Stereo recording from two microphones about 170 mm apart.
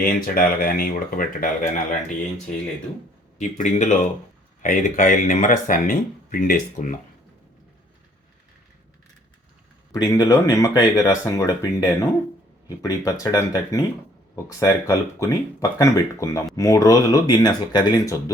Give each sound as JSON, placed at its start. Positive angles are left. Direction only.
{"t": 0.0, "sound": "speech", "side_deg": 55}
{"t": 3.3, "sound": "speech", "side_deg": 45}
{"t": 9.9, "sound": "speech", "side_deg": 20}